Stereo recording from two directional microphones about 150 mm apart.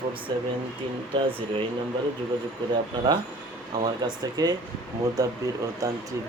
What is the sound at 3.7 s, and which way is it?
Speech, 25° right (ahead or behind).